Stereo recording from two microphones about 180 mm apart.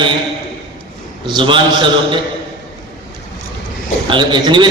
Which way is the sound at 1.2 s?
25° right (ahead or behind).